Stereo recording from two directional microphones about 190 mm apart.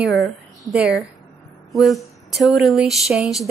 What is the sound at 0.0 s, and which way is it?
A woman's voice, centre (ahead or behind).